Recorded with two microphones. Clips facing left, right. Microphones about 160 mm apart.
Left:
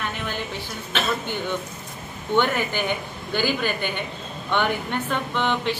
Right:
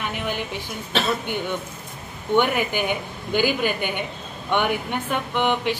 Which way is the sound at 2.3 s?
15° right (ahead or behind).